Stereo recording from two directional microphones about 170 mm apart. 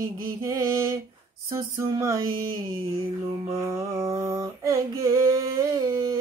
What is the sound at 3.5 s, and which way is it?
Female singing, 20° right (ahead or behind).